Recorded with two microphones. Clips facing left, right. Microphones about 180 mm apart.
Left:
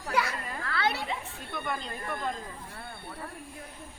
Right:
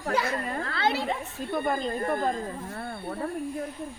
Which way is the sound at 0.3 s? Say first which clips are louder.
Right 7 dB; 45° right (ahead or behind).